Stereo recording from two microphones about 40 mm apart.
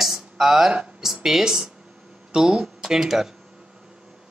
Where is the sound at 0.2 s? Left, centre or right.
Centre.